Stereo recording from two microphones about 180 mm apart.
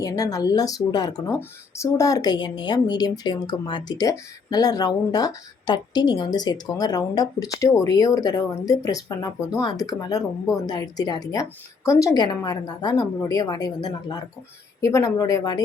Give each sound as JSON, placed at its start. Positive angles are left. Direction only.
{"t": 0.0, "sound": "speech", "side_deg": 20}